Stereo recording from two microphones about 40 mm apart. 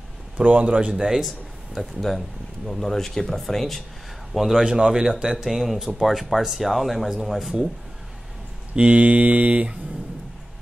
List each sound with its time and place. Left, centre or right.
0.4 s mantra: right
0.9 s a man's voice: centre
1.8 s speech: centre
4.6 s a man's voice: centre
8.7 s mantra: right